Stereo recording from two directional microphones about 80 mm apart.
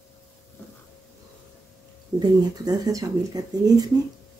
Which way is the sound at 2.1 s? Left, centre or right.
Right.